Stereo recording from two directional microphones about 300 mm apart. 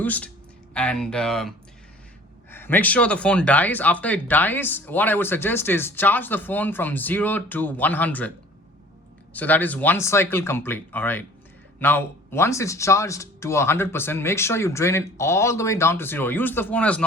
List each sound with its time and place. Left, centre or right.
0.0 s speech: centre
9.3 s speech: centre